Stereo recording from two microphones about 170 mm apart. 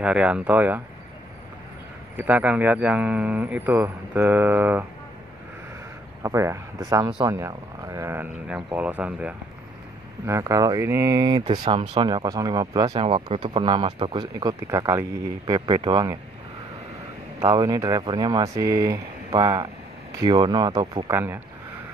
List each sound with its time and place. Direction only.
0.0 s a man's voice: 5° right (ahead or behind)
2.1 s a man's voice: 10° right (ahead or behind)
6.2 s a man's voice: 15° right (ahead or behind)
17.4 s speech: 20° right (ahead or behind)
21.1 s a man's voice: 15° right (ahead or behind)